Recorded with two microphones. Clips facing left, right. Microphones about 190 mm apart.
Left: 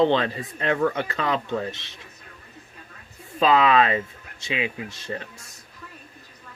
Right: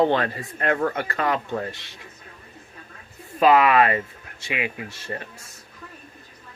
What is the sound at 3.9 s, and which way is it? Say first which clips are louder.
Speech: left 1 dB; 20° left (ahead or behind).